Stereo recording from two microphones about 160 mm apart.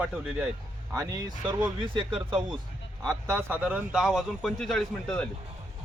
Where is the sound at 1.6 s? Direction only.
30° right (ahead or behind).